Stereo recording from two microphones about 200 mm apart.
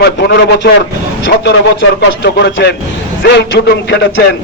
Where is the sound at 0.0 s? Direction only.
60° left (ahead or behind).